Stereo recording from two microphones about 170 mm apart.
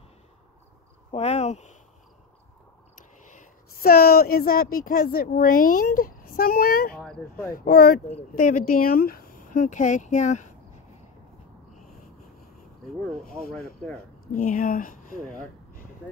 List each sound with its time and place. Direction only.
1.1 s speech: 40° left (ahead or behind)
3.0 s a woman's voice: 50° left (ahead or behind)
13.1 s speech: 5° left (ahead or behind)
14.4 s a woman's voice: 55° left (ahead or behind)